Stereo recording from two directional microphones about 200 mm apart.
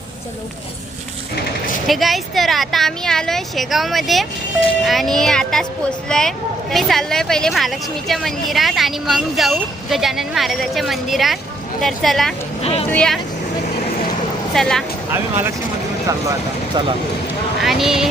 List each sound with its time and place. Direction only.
1.9 s a woman's voice: centre (ahead or behind)
14.5 s a woman's voice: centre (ahead or behind)
15.1 s speech: 10° right (ahead or behind)
16.7 s speech: 20° right (ahead or behind)
17.6 s a woman's voice: centre (ahead or behind)